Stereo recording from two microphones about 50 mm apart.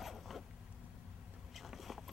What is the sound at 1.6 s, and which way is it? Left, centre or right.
Vehicle, centre.